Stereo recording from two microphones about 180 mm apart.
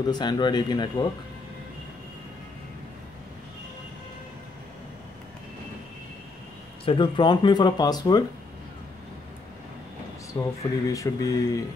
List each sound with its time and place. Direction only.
0.0 s speech: 25° left (ahead or behind)
6.8 s speech: 30° left (ahead or behind)
10.6 s speech: 20° left (ahead or behind)